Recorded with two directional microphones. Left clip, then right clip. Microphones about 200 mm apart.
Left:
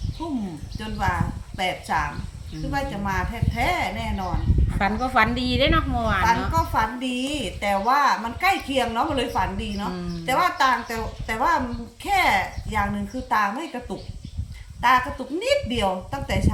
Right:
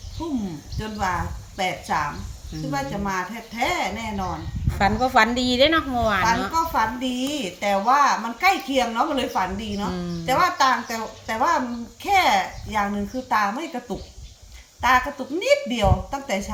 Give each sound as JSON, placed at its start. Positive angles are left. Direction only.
{"t": 0.8, "sound": "a woman's voice", "side_deg": 0}
{"t": 4.7, "sound": "a woman's voice", "side_deg": -20}
{"t": 6.5, "sound": "a woman's voice", "side_deg": 0}